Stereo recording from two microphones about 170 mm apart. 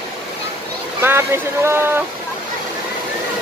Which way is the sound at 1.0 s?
15° right (ahead or behind).